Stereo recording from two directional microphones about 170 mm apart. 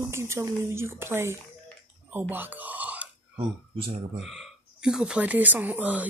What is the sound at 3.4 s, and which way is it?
Speech, 35° right (ahead or behind).